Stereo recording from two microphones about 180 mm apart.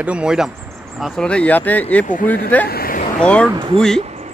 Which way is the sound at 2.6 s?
55° left (ahead or behind).